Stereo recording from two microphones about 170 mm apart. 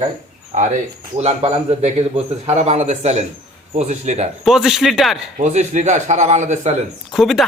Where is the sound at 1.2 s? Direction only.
40° right (ahead or behind).